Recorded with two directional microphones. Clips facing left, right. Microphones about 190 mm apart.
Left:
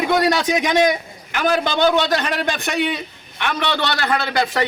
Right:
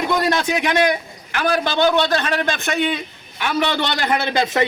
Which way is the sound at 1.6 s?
15° left (ahead or behind).